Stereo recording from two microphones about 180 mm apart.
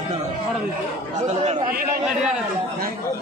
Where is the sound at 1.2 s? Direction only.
40° right (ahead or behind).